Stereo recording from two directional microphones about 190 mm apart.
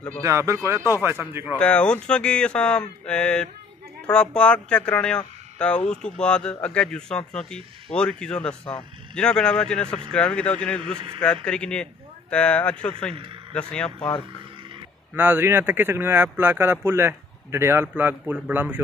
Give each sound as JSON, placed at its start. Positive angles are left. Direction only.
{"t": 0.2, "sound": "speech", "side_deg": -15}
{"t": 1.6, "sound": "speech", "side_deg": 5}
{"t": 15.1, "sound": "speech", "side_deg": -10}